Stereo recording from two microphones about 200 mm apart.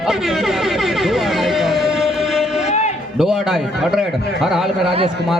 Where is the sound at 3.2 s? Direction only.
5° right (ahead or behind).